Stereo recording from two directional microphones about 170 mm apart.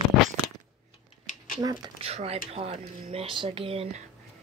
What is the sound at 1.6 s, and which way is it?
Speech, 25° right (ahead or behind).